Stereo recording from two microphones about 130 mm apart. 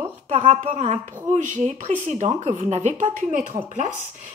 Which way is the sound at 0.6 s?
55° right (ahead or behind).